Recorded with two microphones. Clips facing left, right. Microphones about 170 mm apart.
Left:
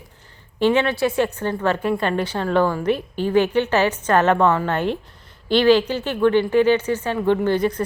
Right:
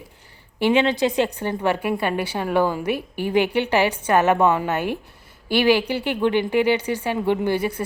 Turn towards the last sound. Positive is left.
turn(degrees=-10)  # may be behind; listen again after turning